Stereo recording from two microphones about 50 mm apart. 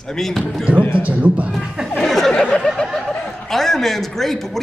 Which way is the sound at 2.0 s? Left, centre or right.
Centre.